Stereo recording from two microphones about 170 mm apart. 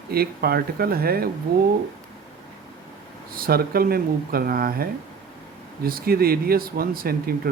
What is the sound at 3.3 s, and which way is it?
Speech, 60° right (ahead or behind).